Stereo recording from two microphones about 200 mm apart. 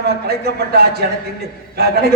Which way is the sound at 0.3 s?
55° right (ahead or behind).